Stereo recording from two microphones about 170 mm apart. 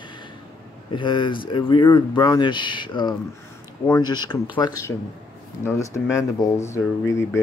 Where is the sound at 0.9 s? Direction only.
30° left (ahead or behind).